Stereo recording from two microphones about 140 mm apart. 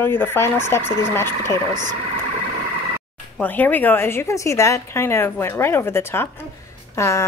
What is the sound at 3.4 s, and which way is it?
A woman's voice, 10° left (ahead or behind).